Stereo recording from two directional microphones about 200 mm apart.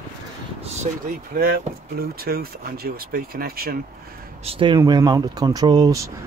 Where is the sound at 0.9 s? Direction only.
35° right (ahead or behind).